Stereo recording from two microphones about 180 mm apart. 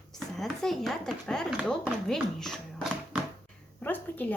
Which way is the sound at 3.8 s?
10° left (ahead or behind).